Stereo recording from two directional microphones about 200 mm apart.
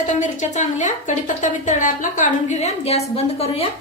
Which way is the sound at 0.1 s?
35° left (ahead or behind).